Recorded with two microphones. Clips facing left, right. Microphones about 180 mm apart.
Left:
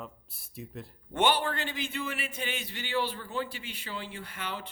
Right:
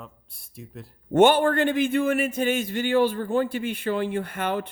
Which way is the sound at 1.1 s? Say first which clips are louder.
Right 10 dB; 45° right (ahead or behind).